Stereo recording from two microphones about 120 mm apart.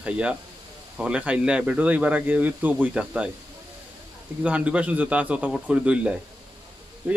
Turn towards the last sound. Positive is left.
turn(degrees=-15)  # may be behind; listen again after turning